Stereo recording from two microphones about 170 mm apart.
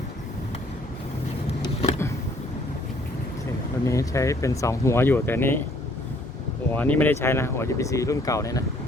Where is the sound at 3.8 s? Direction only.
20° left (ahead or behind).